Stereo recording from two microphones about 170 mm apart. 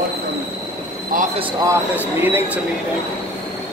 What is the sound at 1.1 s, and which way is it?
Speech, 50° right (ahead or behind).